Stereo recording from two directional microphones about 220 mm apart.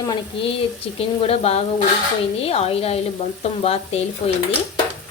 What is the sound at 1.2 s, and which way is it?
Frying, 25° left (ahead or behind).